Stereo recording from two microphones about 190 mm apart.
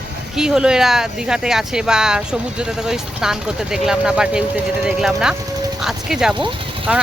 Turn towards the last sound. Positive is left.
turn(degrees=-5)  # may be behind; listen again after turning